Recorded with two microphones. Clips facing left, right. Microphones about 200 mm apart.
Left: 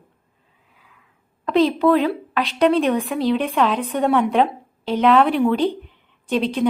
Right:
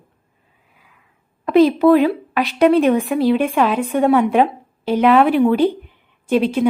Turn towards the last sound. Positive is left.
turn(degrees=-5)  # may be behind; listen again after turning